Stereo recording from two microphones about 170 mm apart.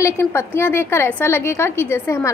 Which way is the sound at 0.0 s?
15° left (ahead or behind).